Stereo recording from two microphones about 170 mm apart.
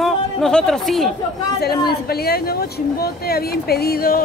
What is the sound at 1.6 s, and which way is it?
Speech, 65° left (ahead or behind).